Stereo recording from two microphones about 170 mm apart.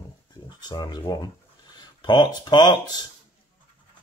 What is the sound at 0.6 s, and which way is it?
Speech, 25° left (ahead or behind).